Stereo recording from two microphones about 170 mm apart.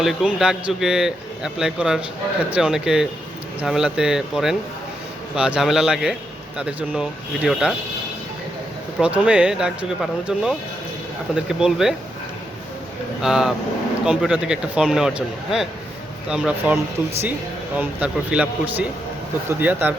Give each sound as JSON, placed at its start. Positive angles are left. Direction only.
{"t": 0.0, "sound": "a man's voice", "side_deg": 0}
{"t": 9.0, "sound": "a man's voice", "side_deg": -5}
{"t": 13.2, "sound": "a man's voice", "side_deg": -5}
{"t": 17.7, "sound": "speech", "side_deg": -5}